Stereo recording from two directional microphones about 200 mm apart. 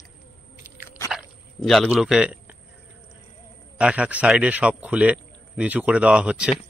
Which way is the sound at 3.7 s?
5° right (ahead or behind).